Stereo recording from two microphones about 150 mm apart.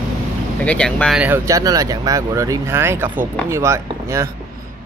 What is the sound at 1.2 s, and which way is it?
Speech, 15° right (ahead or behind).